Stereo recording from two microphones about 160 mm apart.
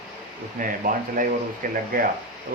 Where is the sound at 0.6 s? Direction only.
55° right (ahead or behind).